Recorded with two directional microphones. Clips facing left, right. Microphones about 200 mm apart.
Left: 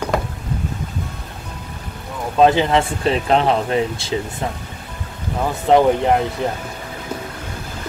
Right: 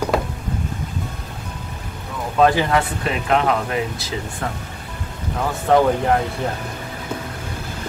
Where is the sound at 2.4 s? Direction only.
25° left (ahead or behind).